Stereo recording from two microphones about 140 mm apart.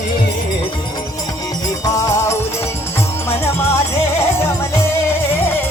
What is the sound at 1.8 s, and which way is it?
Music, 25° left (ahead or behind).